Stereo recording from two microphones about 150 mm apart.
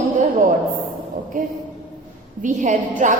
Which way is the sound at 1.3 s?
65° right (ahead or behind).